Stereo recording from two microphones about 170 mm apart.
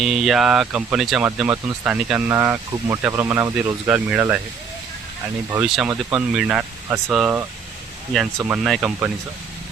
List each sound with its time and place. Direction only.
0.0 s speech: centre (ahead or behind)
5.6 s speech: centre (ahead or behind)
8.4 s speech: 5° right (ahead or behind)